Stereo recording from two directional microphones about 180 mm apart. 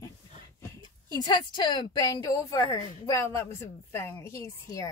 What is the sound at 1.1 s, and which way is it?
A woman's voice, 25° left (ahead or behind).